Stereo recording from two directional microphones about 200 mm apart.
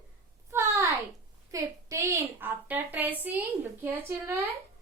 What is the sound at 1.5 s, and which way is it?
A woman's voice, 15° right (ahead or behind).